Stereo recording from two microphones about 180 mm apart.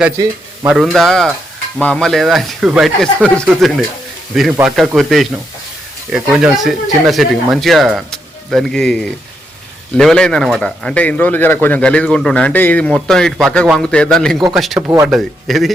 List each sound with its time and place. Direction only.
0.7 s speech: centre (ahead or behind)
14.8 s speech: 15° right (ahead or behind)
15.0 s speech: centre (ahead or behind)